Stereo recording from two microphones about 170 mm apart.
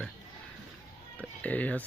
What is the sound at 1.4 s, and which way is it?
Speech, 10° left (ahead or behind).